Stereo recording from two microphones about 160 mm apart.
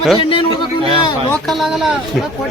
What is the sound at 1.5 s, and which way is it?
Speech, centre (ahead or behind).